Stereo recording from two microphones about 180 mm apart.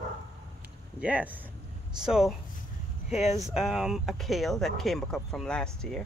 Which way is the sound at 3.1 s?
40° left (ahead or behind).